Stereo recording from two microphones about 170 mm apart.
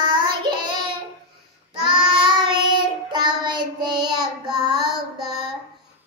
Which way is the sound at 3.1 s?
25° right (ahead or behind).